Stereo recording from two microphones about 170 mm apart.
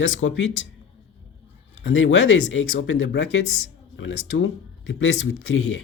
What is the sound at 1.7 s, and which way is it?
Speech, 90° left.